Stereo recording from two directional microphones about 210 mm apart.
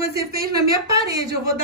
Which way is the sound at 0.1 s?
50° right (ahead or behind).